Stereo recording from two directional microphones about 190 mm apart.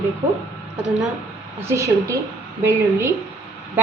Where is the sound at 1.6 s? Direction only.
15° right (ahead or behind).